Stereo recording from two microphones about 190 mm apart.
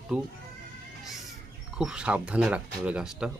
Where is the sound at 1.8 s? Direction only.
5° right (ahead or behind).